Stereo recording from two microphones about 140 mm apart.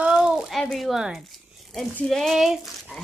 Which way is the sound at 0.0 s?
5° right (ahead or behind).